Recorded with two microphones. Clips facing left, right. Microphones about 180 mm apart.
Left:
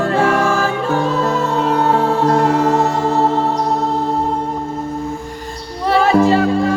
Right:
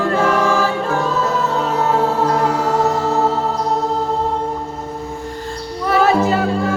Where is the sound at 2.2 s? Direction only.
50° left (ahead or behind).